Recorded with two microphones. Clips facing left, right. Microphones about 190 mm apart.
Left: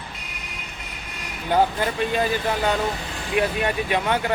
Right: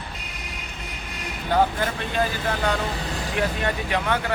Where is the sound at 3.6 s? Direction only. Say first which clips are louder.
Left 2 dB; 15° left (ahead or behind).